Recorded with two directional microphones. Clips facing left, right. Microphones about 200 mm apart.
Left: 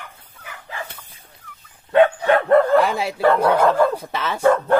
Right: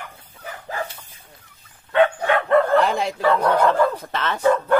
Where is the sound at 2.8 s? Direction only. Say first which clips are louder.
Left 2 dB; 10° left (ahead or behind).